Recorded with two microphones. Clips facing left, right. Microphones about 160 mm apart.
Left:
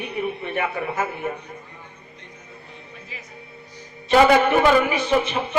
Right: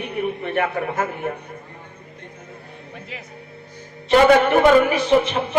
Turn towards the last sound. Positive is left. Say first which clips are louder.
# right 4 dB
turn(degrees=-55)  # may be behind; listen again after turning